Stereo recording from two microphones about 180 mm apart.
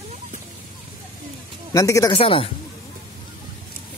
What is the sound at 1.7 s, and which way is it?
Speech, 20° left (ahead or behind).